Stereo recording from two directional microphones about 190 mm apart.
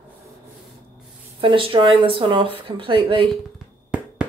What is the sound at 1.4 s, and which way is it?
Speech, 25° right (ahead or behind).